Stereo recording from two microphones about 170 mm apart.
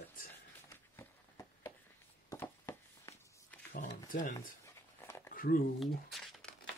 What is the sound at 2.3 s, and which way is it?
Walk, 15° left (ahead or behind).